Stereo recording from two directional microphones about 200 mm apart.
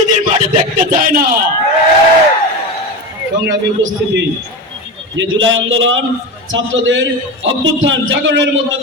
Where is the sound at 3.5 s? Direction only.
65° right (ahead or behind).